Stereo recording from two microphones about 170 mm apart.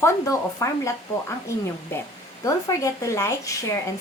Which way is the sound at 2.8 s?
20° left (ahead or behind).